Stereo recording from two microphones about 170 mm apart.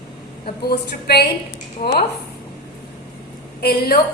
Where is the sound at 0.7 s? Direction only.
70° left (ahead or behind).